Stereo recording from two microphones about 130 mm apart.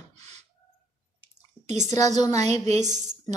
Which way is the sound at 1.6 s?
65° right (ahead or behind).